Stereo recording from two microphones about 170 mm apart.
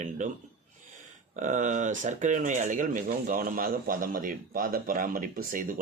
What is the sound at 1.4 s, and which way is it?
A man's voice, 50° right (ahead or behind).